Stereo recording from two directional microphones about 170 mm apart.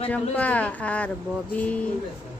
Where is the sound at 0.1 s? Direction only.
10° left (ahead or behind).